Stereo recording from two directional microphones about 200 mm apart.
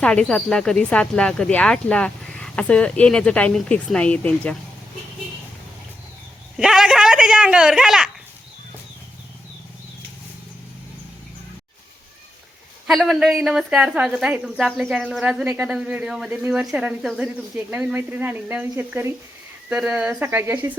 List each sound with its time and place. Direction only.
0.0 s a woman's voice: 5° left (ahead or behind)
6.6 s speech: 5° right (ahead or behind)
12.9 s a woman's voice: centre (ahead or behind)